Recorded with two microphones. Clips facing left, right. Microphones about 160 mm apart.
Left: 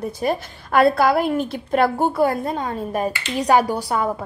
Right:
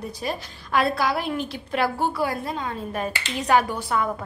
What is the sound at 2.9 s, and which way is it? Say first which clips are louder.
Speech: left 7 dB; 40° left (ahead or behind).